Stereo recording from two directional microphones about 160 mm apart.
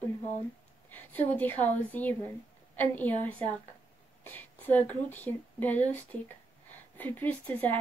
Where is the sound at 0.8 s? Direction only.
10° left (ahead or behind).